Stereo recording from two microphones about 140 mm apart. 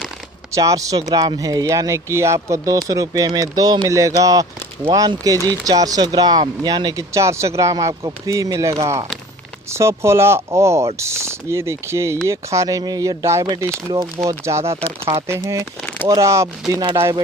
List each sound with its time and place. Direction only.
0.5 s speech: 25° right (ahead or behind)